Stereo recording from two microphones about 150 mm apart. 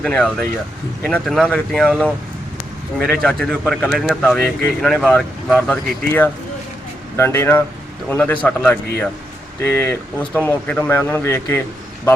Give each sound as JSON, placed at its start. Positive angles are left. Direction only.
{"t": 0.0, "sound": "speech", "side_deg": 5}
{"t": 3.1, "sound": "speech", "side_deg": 5}